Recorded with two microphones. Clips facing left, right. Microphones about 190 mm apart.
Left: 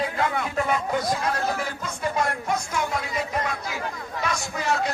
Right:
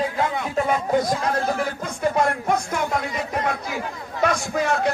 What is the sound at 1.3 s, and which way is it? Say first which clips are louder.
Music: right 4 dB; 50° right (ahead or behind).